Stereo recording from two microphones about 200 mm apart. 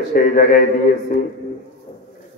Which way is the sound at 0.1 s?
40° left (ahead or behind).